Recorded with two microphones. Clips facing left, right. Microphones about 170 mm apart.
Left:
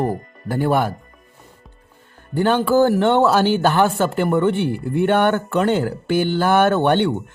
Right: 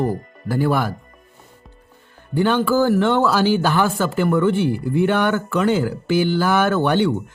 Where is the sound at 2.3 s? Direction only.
45° left (ahead or behind).